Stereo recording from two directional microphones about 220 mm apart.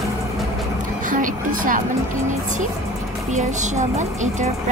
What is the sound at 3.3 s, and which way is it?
Speech, 35° right (ahead or behind).